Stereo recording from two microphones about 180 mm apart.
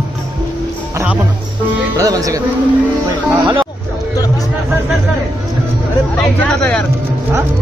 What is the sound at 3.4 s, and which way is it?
Speech, 25° right (ahead or behind).